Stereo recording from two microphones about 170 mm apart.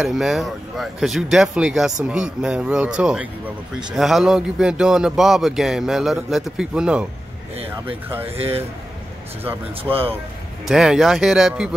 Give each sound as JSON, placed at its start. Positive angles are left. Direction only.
{"t": 0.0, "sound": "speech", "side_deg": 0}
{"t": 8.1, "sound": "speech", "side_deg": -10}
{"t": 9.8, "sound": "speech", "side_deg": -35}
{"t": 10.7, "sound": "speech", "side_deg": 0}